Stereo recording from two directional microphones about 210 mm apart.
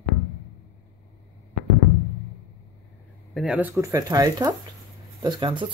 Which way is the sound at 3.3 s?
5° right (ahead or behind).